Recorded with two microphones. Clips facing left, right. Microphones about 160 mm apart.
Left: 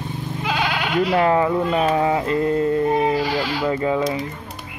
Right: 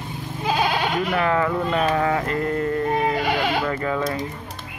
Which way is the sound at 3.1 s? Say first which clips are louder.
Even; 55° right (ahead or behind).